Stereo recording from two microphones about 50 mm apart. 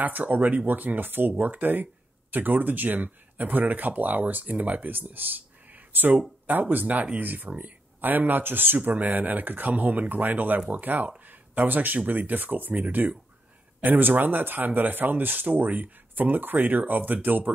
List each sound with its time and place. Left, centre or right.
0.0 s speech: right